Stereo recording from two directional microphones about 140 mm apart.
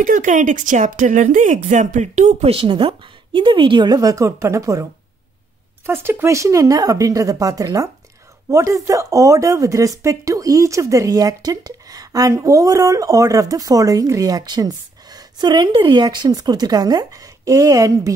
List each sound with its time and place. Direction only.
0.0 s speech: 65° right (ahead or behind)
2.5 s a woman's voice: 40° right (ahead or behind)
5.9 s speech: 15° right (ahead or behind)